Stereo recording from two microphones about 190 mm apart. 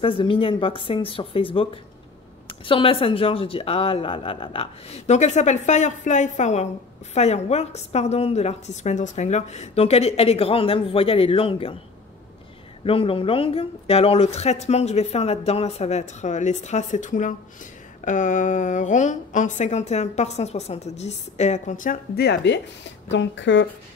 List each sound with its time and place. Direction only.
0.0 s a woman's voice: 30° left (ahead or behind)
12.8 s a woman's voice: 30° left (ahead or behind); by 23.7 s 70° left (ahead or behind)